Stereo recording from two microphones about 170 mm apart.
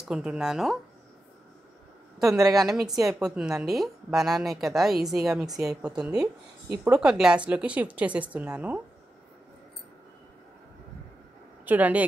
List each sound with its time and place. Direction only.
0.0 s a woman's voice: 5° right (ahead or behind)
2.3 s a woman's voice: 20° right (ahead or behind)
2.6 s a woman's voice: centre (ahead or behind)
11.6 s speech: 10° right (ahead or behind)